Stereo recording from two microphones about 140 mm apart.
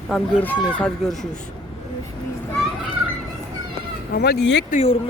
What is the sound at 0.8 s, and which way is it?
Speech, 5° left (ahead or behind).